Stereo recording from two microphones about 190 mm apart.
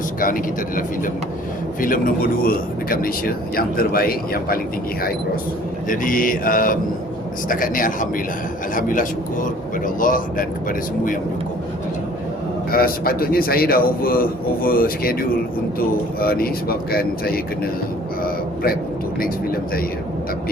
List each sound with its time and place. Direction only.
0.2 s speech: 45° left (ahead or behind)
5.9 s speech: 45° left (ahead or behind)
12.7 s speech: 50° left (ahead or behind)
16.2 s speech: 50° left (ahead or behind)
18.2 s a sound: 50° left (ahead or behind)
19.2 s speech: 50° left (ahead or behind)